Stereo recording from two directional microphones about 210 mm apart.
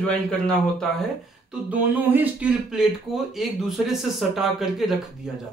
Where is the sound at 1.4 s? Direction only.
5° right (ahead or behind).